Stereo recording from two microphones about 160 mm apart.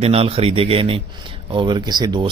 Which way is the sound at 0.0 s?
40° right (ahead or behind).